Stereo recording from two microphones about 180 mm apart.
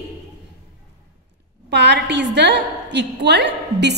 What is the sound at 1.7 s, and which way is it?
A woman's voice, 70° right (ahead or behind).